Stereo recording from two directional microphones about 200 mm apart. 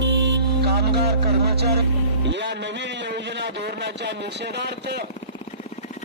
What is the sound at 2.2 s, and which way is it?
A man's voice, 60° right (ahead or behind).